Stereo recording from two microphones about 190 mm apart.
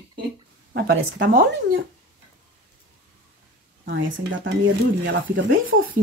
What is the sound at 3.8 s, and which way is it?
Speech, 80° right.